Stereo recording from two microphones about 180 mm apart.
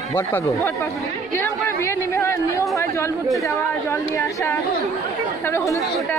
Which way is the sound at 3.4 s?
15° left (ahead or behind).